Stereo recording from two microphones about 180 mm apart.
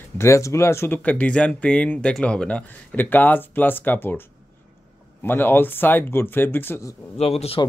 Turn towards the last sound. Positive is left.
turn(degrees=35)  # may be behind; listen again after turning